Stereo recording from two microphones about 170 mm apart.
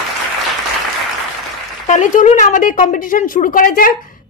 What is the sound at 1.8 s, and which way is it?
A woman's voice, 45° left (ahead or behind).